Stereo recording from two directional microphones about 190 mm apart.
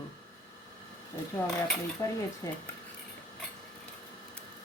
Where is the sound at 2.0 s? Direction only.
15° left (ahead or behind).